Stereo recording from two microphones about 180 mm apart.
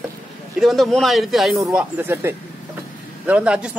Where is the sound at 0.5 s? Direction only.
Centre (ahead or behind).